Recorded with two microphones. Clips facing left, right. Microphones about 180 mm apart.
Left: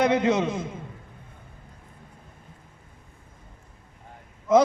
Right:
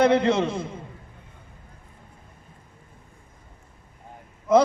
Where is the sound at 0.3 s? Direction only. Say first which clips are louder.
Right 1 dB; 20° left (ahead or behind).